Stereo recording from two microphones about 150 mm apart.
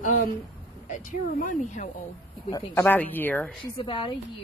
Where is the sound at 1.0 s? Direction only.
65° left (ahead or behind).